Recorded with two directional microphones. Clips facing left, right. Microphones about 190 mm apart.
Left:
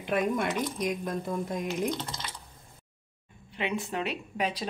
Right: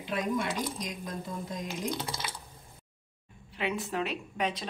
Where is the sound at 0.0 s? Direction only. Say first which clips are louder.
Left 3 dB; 55° left (ahead or behind).